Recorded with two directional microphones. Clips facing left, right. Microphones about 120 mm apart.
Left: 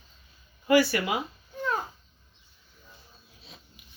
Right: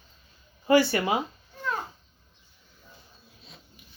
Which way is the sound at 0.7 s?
25° right (ahead or behind).